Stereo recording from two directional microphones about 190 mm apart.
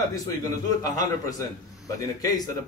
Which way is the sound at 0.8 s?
20° left (ahead or behind).